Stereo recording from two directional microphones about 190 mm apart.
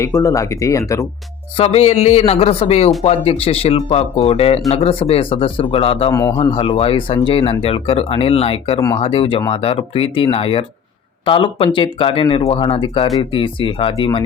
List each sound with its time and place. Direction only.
0.0 s speech: 15° left (ahead or behind)
1.5 s speech: 30° left (ahead or behind)
6.1 s speech: 15° left (ahead or behind)